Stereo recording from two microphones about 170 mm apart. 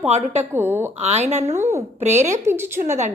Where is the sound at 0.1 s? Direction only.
40° right (ahead or behind).